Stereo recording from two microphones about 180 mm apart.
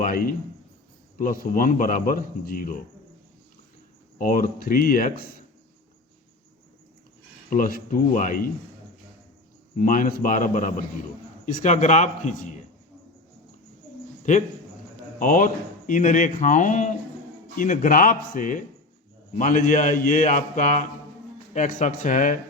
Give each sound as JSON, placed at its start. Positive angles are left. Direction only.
{"t": 0.0, "sound": "speech", "side_deg": 50}
{"t": 4.2, "sound": "speech", "side_deg": 50}
{"t": 7.5, "sound": "speech", "side_deg": 50}
{"t": 9.7, "sound": "a man's voice", "side_deg": 50}
{"t": 14.3, "sound": "speech", "side_deg": 45}